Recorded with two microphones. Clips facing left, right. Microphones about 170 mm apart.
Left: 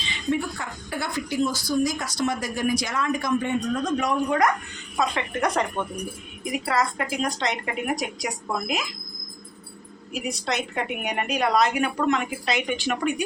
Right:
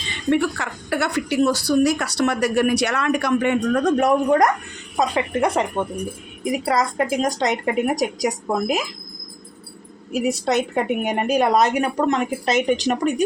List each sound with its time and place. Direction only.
0.3 s speech: 75° right (ahead or behind); by 4.4 s 50° right (ahead or behind)
4.9 s speech: 30° right (ahead or behind)
6.7 s speech: 40° right (ahead or behind)
10.5 s a woman's voice: 45° right (ahead or behind)